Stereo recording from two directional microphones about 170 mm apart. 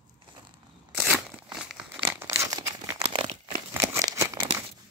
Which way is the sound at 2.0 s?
15° right (ahead or behind).